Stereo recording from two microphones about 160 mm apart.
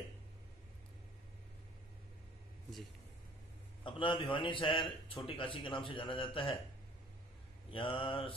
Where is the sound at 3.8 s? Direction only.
30° left (ahead or behind).